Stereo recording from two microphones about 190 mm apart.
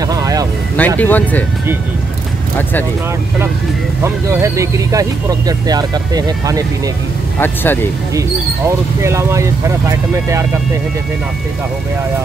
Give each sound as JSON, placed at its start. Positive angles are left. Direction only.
{"t": 0.1, "sound": "music", "side_deg": -20}
{"t": 0.7, "sound": "speech", "side_deg": 10}
{"t": 4.0, "sound": "speech", "side_deg": -15}
{"t": 7.3, "sound": "speech", "side_deg": 10}
{"t": 8.1, "sound": "speech", "side_deg": -15}